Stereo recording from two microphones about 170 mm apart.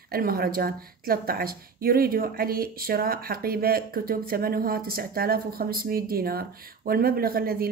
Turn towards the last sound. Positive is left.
turn(degrees=-60)  # may be behind; listen again after turning